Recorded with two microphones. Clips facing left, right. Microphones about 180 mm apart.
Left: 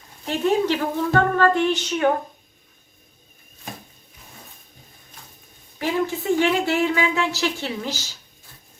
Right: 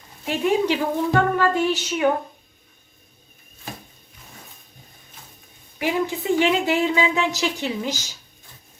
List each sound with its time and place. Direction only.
0.3 s a woman's voice: 15° right (ahead or behind)
5.8 s a woman's voice: 15° right (ahead or behind)